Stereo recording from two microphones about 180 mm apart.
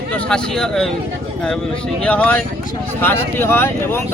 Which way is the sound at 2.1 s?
10° left (ahead or behind).